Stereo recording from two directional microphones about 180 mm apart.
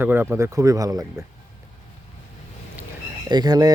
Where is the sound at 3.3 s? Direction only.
20° right (ahead or behind).